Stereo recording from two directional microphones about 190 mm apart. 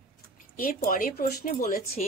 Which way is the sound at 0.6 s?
45° left (ahead or behind).